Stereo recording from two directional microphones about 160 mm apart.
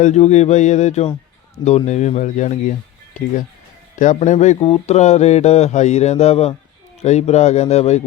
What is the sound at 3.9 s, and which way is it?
Speech, 50° left (ahead or behind).